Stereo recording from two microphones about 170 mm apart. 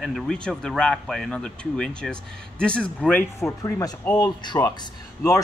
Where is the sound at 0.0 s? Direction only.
Centre (ahead or behind).